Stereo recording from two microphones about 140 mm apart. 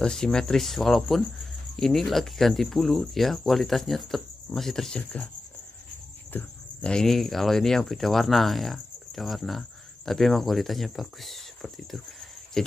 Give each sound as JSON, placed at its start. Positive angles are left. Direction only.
{"t": 0.0, "sound": "speech", "side_deg": 5}
{"t": 6.3, "sound": "speech", "side_deg": 5}